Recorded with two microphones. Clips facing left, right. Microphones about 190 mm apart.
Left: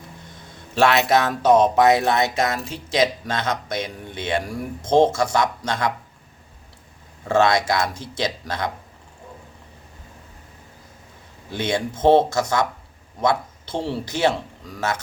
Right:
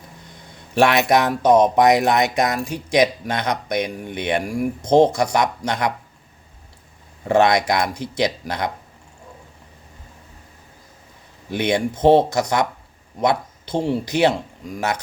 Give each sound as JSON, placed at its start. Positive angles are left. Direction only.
{"t": 0.7, "sound": "speech", "side_deg": -15}
{"t": 7.3, "sound": "speech", "side_deg": -20}
{"t": 11.5, "sound": "speech", "side_deg": -15}